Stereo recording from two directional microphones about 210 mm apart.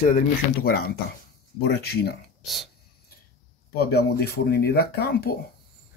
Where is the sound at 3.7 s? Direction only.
50° left (ahead or behind).